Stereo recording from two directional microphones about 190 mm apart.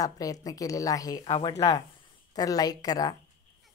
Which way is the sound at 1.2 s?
30° left (ahead or behind).